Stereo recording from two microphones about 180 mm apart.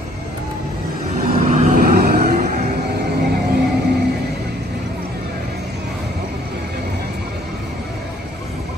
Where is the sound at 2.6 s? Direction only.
65° right (ahead or behind).